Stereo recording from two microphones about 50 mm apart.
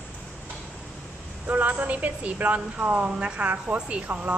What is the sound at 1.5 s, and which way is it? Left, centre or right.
Speech, right.